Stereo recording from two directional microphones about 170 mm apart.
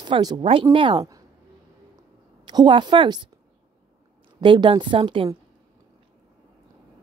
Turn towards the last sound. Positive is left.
turn(degrees=-30)  # may be behind; listen again after turning